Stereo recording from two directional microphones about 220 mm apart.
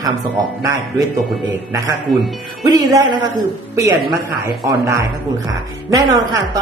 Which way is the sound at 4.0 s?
45° right (ahead or behind).